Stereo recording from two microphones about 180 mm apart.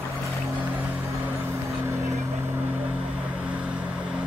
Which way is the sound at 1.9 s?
10° right (ahead or behind).